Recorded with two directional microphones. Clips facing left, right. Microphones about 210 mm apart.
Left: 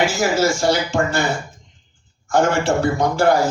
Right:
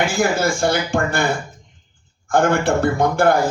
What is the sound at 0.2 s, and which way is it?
A man's voice, 55° right (ahead or behind).